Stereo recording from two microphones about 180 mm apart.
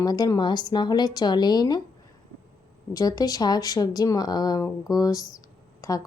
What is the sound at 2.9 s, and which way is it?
A woman's voice, 20° left (ahead or behind).